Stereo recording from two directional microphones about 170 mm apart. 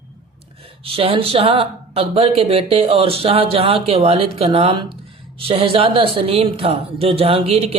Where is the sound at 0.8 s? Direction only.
35° right (ahead or behind).